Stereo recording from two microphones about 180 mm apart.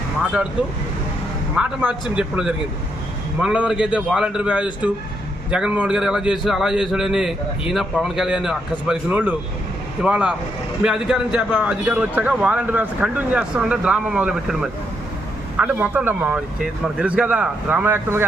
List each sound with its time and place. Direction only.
1.5 s a man's voice: 5° right (ahead or behind)